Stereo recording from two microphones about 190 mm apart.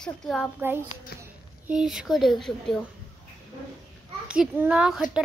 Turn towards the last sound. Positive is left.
turn(degrees=-5)  # may be behind; listen again after turning